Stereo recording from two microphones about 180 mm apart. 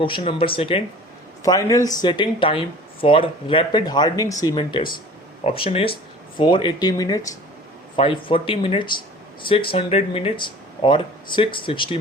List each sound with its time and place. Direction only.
0.0 s speech: 30° left (ahead or behind)
1.5 s speech: 20° left (ahead or behind)
7.9 s speech: 30° left (ahead or behind)